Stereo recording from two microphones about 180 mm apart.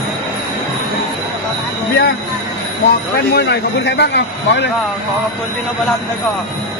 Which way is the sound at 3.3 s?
65° left (ahead or behind).